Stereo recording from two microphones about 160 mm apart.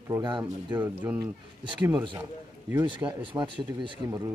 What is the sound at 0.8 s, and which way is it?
Speech, 10° right (ahead or behind).